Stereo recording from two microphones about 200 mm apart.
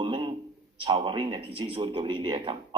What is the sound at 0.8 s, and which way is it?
Speech, 25° right (ahead or behind).